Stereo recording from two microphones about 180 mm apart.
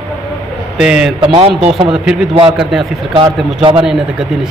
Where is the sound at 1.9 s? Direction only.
5° right (ahead or behind).